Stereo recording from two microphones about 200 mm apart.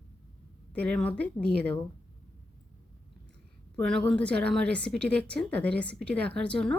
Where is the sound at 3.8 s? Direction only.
5° left (ahead or behind).